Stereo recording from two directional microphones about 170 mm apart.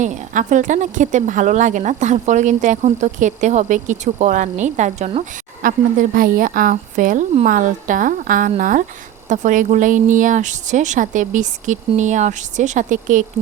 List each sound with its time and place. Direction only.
0.0 s a woman's voice: 45° right (ahead or behind)
5.6 s a woman's voice: 55° right (ahead or behind)